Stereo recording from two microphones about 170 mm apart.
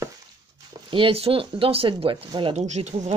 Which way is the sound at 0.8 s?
30° right (ahead or behind).